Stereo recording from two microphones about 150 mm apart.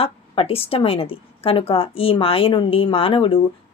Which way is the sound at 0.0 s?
40° left (ahead or behind).